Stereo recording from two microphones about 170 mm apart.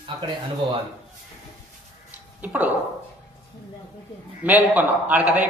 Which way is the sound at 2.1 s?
10° right (ahead or behind).